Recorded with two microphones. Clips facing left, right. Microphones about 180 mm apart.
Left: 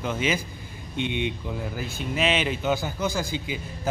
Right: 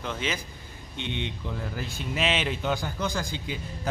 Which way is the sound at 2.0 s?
Centre (ahead or behind).